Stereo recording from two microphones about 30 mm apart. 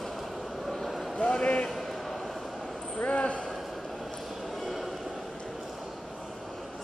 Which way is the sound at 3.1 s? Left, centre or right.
Left.